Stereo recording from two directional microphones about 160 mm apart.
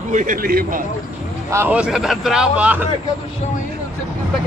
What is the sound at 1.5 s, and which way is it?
A man's voice, 10° right (ahead or behind).